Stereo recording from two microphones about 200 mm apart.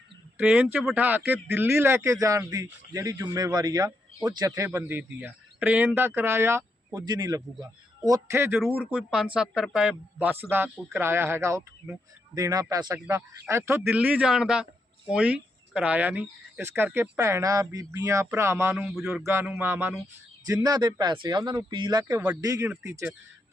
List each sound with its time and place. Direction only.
0.3 s a man's voice: 5° right (ahead or behind)